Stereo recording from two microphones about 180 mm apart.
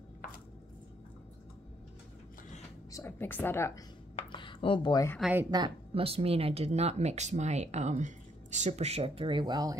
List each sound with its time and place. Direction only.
2.9 s a woman's voice: 15° left (ahead or behind)
4.2 s a sound: 25° left (ahead or behind)
5.2 s speech: 10° right (ahead or behind)
5.5 s speech: 25° right (ahead or behind)